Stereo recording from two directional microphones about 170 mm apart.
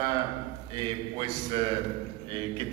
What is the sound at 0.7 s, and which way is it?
A man's voice, 25° right (ahead or behind).